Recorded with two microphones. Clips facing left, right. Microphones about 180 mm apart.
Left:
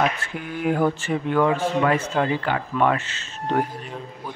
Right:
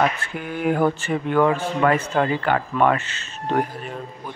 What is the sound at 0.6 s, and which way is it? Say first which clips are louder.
Speech: right 1 dB; 55° right (ahead or behind).